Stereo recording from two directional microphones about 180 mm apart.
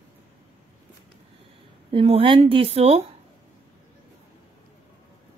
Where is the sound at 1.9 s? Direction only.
30° right (ahead or behind).